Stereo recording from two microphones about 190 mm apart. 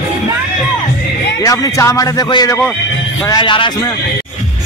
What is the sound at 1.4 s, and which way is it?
A man's voice, 20° left (ahead or behind).